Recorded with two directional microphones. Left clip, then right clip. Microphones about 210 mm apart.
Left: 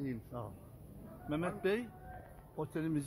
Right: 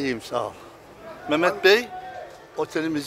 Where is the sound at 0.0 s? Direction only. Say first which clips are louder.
Right 18 dB; 25° right (ahead or behind).